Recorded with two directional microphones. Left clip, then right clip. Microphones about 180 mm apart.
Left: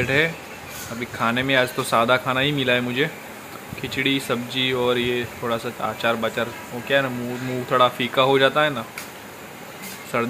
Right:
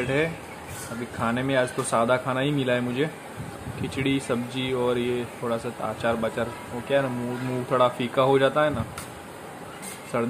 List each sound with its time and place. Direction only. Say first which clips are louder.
0.0 s a man's voice: left 5 dB; centre (ahead or behind)
10.1 s a man's voice: left 3 dB; centre (ahead or behind)